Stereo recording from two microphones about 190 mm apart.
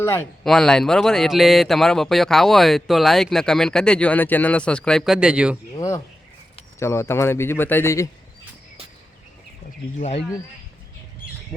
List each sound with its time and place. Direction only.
0.4 s speech: centre (ahead or behind)
5.7 s a man's voice: 15° left (ahead or behind)